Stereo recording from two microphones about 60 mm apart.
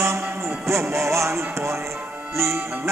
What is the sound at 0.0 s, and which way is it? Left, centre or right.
Music, right.